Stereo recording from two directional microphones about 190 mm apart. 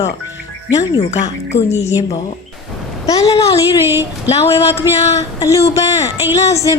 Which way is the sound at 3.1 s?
20° left (ahead or behind).